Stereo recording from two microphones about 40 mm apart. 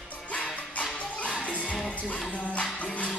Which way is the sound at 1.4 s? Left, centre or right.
Left.